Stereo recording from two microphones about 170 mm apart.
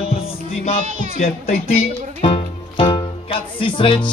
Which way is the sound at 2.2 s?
30° left (ahead or behind).